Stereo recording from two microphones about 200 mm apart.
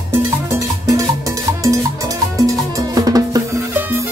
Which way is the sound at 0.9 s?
15° right (ahead or behind).